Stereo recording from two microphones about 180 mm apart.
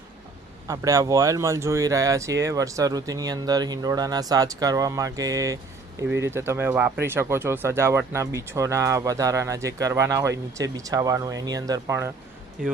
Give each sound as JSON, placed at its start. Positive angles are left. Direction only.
{"t": 0.7, "sound": "speech", "side_deg": -15}